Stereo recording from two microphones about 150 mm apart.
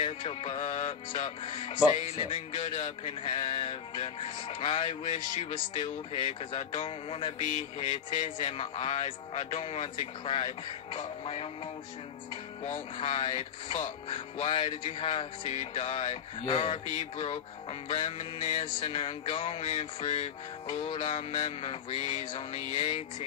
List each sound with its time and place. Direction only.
0.0 s music: 40° left (ahead or behind)
7.3 s music: 50° left (ahead or behind)
12.6 s music: 40° left (ahead or behind)